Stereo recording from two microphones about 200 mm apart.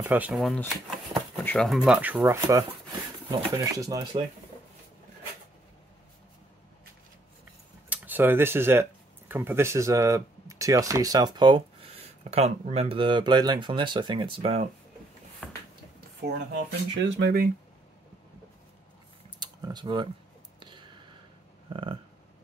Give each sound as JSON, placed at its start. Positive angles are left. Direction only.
{"t": 0.0, "sound": "speech", "side_deg": -10}
{"t": 7.9, "sound": "speech", "side_deg": -10}
{"t": 15.4, "sound": "a sound", "side_deg": 5}
{"t": 17.0, "sound": "speech", "side_deg": -55}
{"t": 19.4, "sound": "speech", "side_deg": -20}
{"t": 20.5, "sound": "a sound", "side_deg": -25}